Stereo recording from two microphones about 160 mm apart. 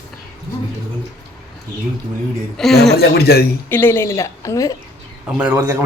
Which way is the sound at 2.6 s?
Centre (ahead or behind).